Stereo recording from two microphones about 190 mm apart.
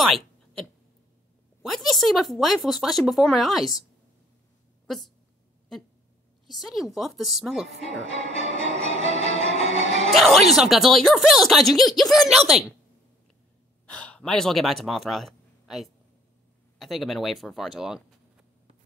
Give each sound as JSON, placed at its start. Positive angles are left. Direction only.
{"t": 0.0, "sound": "a sound", "side_deg": 0}
{"t": 1.6, "sound": "speech", "side_deg": 0}
{"t": 4.8, "sound": "speech", "side_deg": 0}
{"t": 6.4, "sound": "speech", "side_deg": 0}
{"t": 8.0, "sound": "speech", "side_deg": 85}
{"t": 9.0, "sound": "music", "side_deg": 80}
{"t": 10.1, "sound": "speech", "side_deg": 0}
{"t": 13.8, "sound": "speech", "side_deg": 5}